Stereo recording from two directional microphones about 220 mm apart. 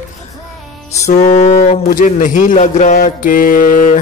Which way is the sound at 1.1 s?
30° left (ahead or behind).